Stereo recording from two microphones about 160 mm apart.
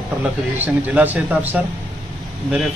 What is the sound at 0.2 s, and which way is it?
Speech, 10° right (ahead or behind).